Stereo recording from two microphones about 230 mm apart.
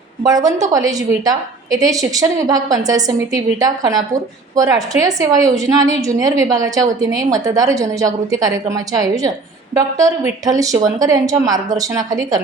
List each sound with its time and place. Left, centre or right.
0.2 s a woman's voice: centre